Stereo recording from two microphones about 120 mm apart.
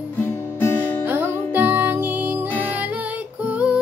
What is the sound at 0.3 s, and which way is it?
Guitar, 20° left (ahead or behind).